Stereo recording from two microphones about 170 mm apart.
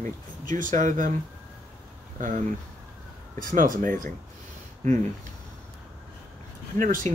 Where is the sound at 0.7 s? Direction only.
50° right (ahead or behind).